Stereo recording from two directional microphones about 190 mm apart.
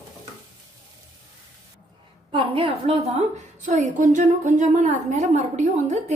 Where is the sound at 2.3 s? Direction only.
30° right (ahead or behind).